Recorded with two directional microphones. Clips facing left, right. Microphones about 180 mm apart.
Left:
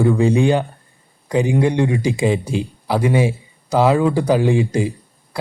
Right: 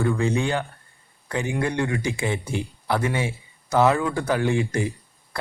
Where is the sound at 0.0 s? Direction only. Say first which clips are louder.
Left 8 dB; 15° left (ahead or behind).